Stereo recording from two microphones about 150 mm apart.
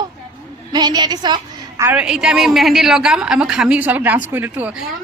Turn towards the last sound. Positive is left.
turn(degrees=-15)  # may be behind; listen again after turning